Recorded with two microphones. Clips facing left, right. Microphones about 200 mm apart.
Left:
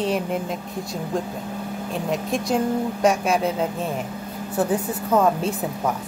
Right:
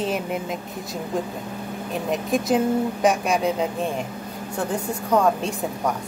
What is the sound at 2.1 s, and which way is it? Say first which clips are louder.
Speech: right 2 dB; centre (ahead or behind).